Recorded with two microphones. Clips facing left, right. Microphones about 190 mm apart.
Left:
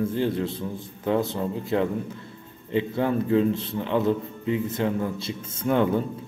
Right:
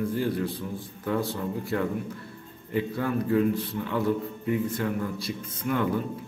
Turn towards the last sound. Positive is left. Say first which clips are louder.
# left 5 dB
turn(degrees=25)  # may be behind; listen again after turning